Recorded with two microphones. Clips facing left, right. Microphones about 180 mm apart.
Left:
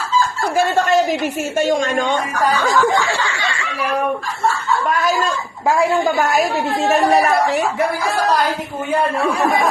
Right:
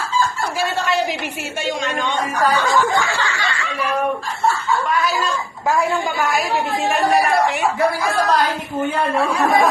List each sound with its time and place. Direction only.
0.5 s a woman's voice: 45° left (ahead or behind)
3.1 s snicker: 20° left (ahead or behind)
4.9 s speech: 45° left (ahead or behind)
7.3 s speech: 40° left (ahead or behind)